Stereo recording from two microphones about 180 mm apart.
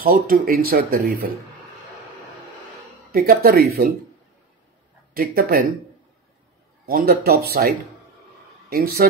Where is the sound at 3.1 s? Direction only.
55° right (ahead or behind).